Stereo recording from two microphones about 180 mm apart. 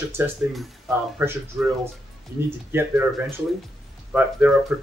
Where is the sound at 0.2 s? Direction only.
10° right (ahead or behind).